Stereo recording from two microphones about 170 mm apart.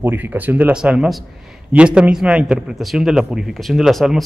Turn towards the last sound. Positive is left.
turn(degrees=0)  # may be behind; listen again after turning